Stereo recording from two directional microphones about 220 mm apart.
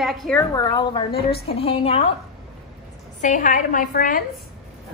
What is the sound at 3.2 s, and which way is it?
A woman's voice, 35° left (ahead or behind).